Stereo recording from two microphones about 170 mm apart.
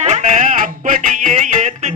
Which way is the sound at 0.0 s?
45° right (ahead or behind).